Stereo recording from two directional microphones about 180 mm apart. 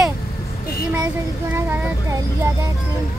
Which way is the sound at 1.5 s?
15° right (ahead or behind).